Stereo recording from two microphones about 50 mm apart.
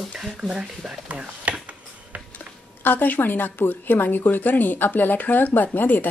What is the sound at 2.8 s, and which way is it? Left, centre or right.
A woman's voice, left.